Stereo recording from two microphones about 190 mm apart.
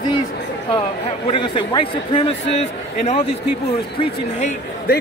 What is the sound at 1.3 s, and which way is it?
A man's voice, 25° left (ahead or behind).